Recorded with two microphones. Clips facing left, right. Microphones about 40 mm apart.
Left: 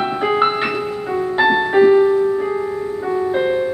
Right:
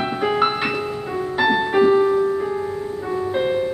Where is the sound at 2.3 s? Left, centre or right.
Centre.